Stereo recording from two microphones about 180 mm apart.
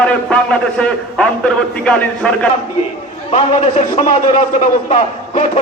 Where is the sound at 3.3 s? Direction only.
40° left (ahead or behind).